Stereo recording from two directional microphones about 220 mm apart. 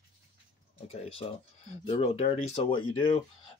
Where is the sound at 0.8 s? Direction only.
25° left (ahead or behind).